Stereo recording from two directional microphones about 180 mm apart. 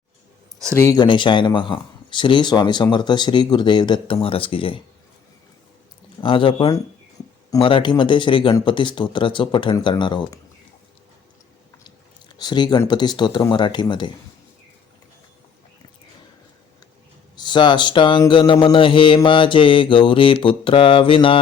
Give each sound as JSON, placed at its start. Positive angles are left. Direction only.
{"t": 0.8, "sound": "speech", "side_deg": 20}
{"t": 6.2, "sound": "speech", "side_deg": 30}
{"t": 12.4, "sound": "speech", "side_deg": 25}
{"t": 17.3, "sound": "speech", "side_deg": 25}